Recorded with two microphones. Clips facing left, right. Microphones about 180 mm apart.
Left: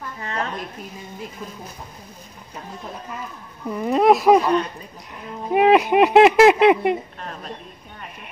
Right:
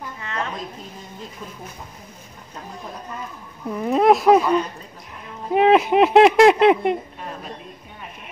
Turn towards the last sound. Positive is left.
turn(degrees=-5)  # may be behind; listen again after turning